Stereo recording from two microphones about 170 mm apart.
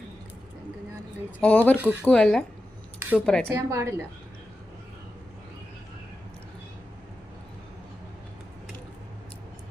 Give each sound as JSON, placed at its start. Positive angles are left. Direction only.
{"t": 1.4, "sound": "speech", "side_deg": 10}
{"t": 3.0, "sound": "a sound", "side_deg": -10}
{"t": 3.5, "sound": "a woman's voice", "side_deg": -15}